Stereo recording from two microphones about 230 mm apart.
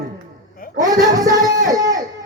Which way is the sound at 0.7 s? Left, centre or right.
Centre.